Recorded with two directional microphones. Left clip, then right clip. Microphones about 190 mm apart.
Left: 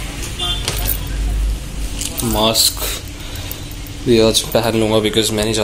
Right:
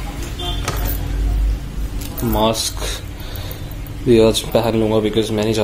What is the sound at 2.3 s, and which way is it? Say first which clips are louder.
Speech: left 3 dB; 5° right (ahead or behind).